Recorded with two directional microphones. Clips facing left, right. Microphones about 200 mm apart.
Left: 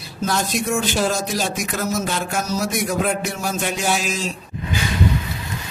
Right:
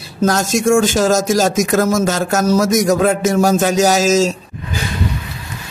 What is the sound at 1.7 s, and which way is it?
Speech, 90° right.